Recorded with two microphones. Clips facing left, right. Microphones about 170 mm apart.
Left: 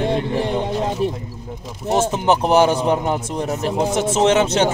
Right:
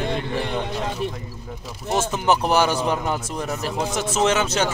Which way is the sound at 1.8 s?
20° left (ahead or behind).